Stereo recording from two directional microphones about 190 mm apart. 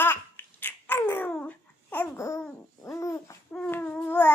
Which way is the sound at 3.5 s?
10° left (ahead or behind).